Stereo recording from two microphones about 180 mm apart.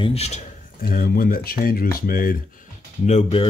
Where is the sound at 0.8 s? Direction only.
55° left (ahead or behind).